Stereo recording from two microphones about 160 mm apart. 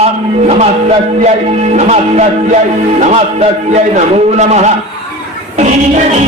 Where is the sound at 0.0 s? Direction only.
40° right (ahead or behind).